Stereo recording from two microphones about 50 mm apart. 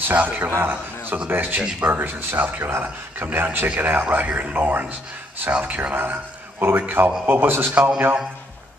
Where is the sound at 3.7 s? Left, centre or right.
Right.